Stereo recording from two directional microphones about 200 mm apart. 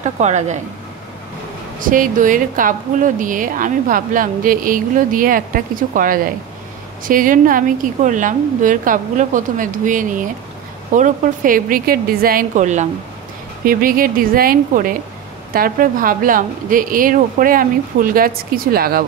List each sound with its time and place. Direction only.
0.0 s a woman's voice: 35° right (ahead or behind)
1.8 s a woman's voice: 45° right (ahead or behind)